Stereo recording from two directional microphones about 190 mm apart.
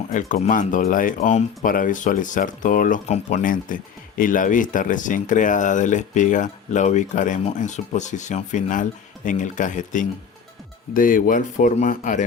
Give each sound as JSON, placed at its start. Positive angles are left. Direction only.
{"t": 0.1, "sound": "speech", "side_deg": 40}